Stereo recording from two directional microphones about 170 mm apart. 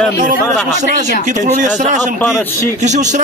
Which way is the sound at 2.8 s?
45° right (ahead or behind).